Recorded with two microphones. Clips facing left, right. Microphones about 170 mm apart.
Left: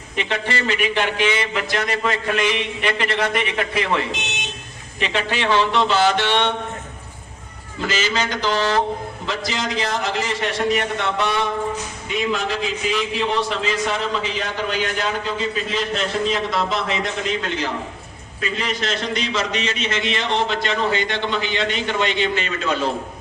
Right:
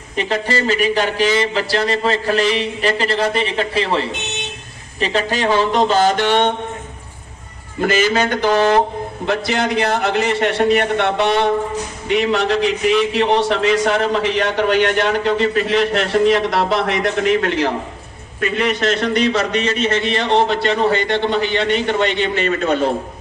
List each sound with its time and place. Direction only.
0.2 s speech: 40° right (ahead or behind)
7.8 s a man's voice: 55° right (ahead or behind)
12.0 s a man's voice: 70° right (ahead or behind)
18.3 s a man's voice: 60° right (ahead or behind)